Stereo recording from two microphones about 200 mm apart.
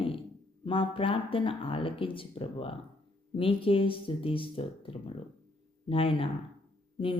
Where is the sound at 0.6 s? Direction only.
25° left (ahead or behind).